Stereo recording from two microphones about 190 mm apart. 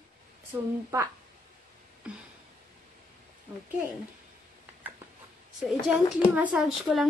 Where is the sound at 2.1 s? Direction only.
5° right (ahead or behind).